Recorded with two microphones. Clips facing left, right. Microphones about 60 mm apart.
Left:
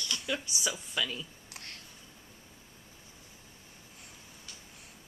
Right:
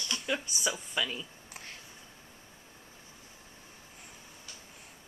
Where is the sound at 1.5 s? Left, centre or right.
Centre.